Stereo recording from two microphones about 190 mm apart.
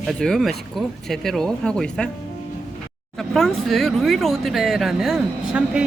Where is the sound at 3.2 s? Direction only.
Centre (ahead or behind).